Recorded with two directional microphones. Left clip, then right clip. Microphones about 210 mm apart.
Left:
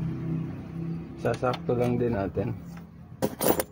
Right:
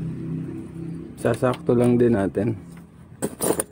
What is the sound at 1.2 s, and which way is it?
Speech, 45° right (ahead or behind).